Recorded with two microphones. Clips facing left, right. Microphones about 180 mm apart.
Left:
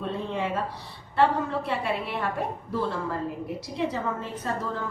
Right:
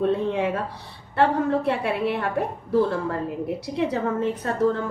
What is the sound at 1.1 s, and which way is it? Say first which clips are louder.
A woman's voice: right 3 dB; 60° right (ahead or behind).